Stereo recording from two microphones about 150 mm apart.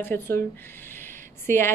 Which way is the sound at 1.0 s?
15° left (ahead or behind).